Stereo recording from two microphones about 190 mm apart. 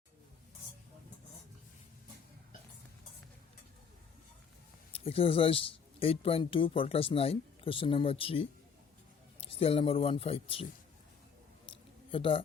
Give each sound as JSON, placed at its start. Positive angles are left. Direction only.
{"t": 4.9, "sound": "speech", "side_deg": 30}
{"t": 12.1, "sound": "speech", "side_deg": 30}